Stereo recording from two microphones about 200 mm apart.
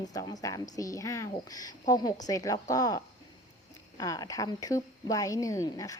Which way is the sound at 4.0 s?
15° left (ahead or behind).